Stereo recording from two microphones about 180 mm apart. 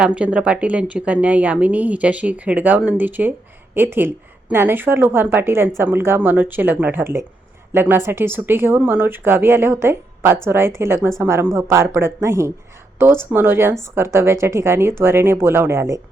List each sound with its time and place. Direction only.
0.0 s a woman's voice: 5° right (ahead or behind)